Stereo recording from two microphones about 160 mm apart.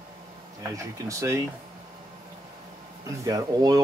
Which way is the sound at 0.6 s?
20° right (ahead or behind).